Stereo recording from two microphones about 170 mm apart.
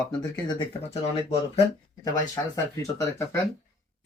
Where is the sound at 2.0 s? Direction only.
20° left (ahead or behind).